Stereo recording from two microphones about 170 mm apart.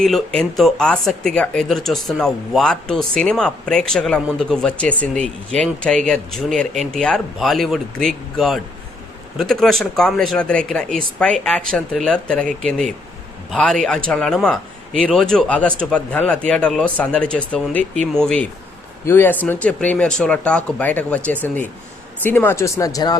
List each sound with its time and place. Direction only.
0.0 s speech: centre (ahead or behind); by 23.1 s 20° left (ahead or behind)